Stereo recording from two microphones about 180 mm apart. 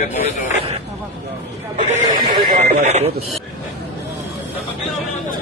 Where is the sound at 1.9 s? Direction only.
40° right (ahead or behind).